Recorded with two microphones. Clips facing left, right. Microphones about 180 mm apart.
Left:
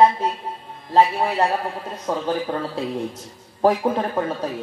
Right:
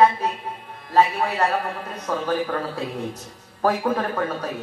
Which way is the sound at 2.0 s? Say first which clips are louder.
Even; 25° left (ahead or behind).